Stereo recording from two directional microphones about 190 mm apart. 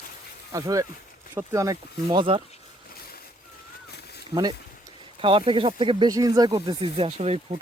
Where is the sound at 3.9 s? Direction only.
60° left (ahead or behind).